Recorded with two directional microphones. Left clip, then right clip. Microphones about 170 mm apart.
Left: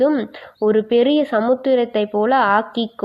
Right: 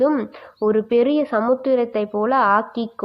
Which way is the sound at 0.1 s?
5° left (ahead or behind).